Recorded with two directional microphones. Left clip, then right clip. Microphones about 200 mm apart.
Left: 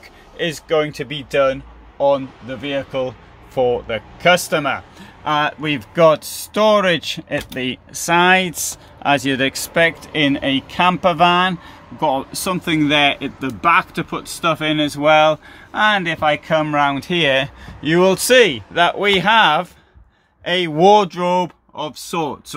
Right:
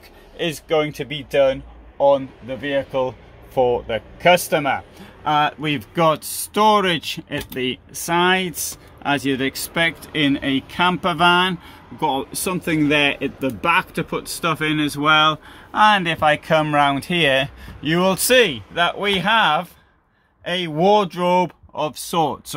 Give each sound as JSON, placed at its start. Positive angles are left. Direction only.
{"t": 0.4, "sound": "speech", "side_deg": 5}
{"t": 15.8, "sound": "speech", "side_deg": -10}
{"t": 21.2, "sound": "speech", "side_deg": -10}
{"t": 21.7, "sound": "speech", "side_deg": -25}